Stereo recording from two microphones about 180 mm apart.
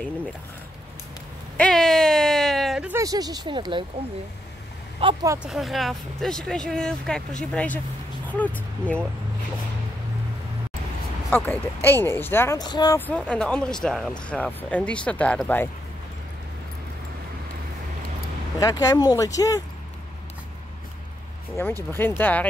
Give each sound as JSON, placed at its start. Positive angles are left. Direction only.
{"t": 1.6, "sound": "a sound", "side_deg": 0}
{"t": 2.9, "sound": "speech", "side_deg": -20}
{"t": 5.0, "sound": "speech", "side_deg": -30}
{"t": 5.4, "sound": "speech", "side_deg": 0}
{"t": 11.2, "sound": "speech", "side_deg": 10}
{"t": 13.0, "sound": "speech", "side_deg": 5}
{"t": 18.6, "sound": "speech", "side_deg": 20}
{"t": 21.6, "sound": "speech", "side_deg": 15}